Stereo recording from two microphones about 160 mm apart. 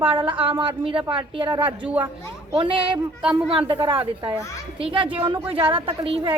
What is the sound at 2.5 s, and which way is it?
A woman's voice, 35° right (ahead or behind).